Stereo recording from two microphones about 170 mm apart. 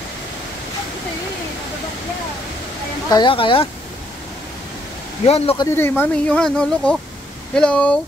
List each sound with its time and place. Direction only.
3.1 s speech: 25° left (ahead or behind)
5.2 s speech: 35° left (ahead or behind)
5.8 s speech: 10° left (ahead or behind)